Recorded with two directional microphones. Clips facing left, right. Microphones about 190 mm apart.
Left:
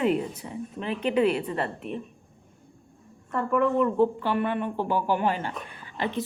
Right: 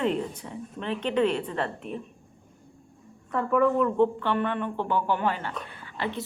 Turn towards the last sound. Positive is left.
turn(degrees=15)  # may be behind; listen again after turning